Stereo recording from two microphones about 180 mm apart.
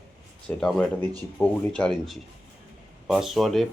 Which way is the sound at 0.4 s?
Centre (ahead or behind).